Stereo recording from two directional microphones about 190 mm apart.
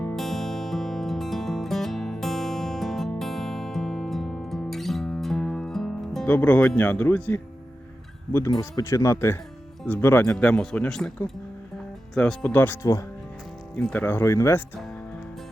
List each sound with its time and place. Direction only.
0.0 s music: 5° left (ahead or behind)
8.3 s speech: 15° left (ahead or behind)
12.1 s speech: 5° left (ahead or behind)